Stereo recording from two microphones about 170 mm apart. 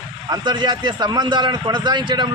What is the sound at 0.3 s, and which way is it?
A man's voice, 25° right (ahead or behind).